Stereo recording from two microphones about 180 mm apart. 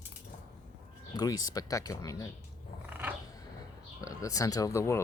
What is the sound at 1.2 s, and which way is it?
Speech, 20° left (ahead or behind).